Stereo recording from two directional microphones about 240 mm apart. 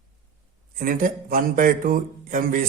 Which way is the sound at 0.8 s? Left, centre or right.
Right.